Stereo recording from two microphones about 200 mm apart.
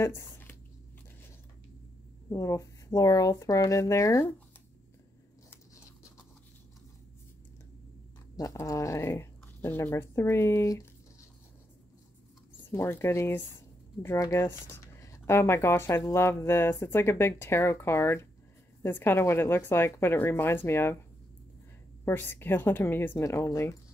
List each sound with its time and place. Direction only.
0.0 s squish: 10° left (ahead or behind)
2.2 s speech: 15° left (ahead or behind)
8.4 s speech: 15° left (ahead or behind)
12.7 s speech: 10° left (ahead or behind)
22.0 s speech: 10° left (ahead or behind)